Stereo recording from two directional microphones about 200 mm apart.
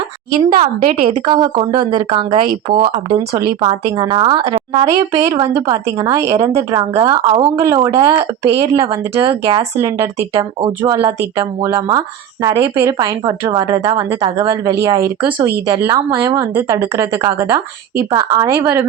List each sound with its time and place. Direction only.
0.3 s a woman's voice: 30° right (ahead or behind)
3.1 s a woman's voice: 20° right (ahead or behind)
7.5 s a woman's voice: 15° right (ahead or behind)